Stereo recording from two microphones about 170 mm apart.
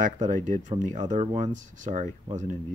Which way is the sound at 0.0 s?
50° right (ahead or behind).